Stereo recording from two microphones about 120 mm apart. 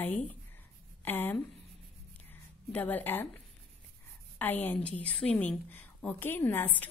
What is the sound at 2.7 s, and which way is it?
Speech, 15° left (ahead or behind).